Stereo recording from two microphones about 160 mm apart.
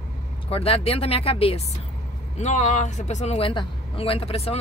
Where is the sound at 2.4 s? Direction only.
50° left (ahead or behind).